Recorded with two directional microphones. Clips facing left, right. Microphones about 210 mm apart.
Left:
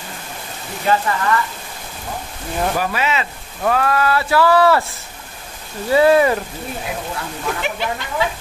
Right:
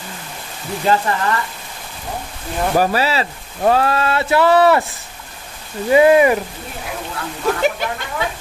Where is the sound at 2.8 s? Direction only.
35° right (ahead or behind).